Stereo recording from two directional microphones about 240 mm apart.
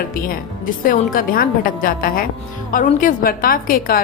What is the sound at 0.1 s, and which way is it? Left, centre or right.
A woman's voice, left.